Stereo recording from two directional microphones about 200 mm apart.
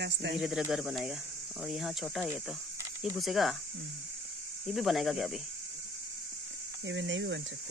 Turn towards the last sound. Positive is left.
turn(degrees=-65)  # may be behind; listen again after turning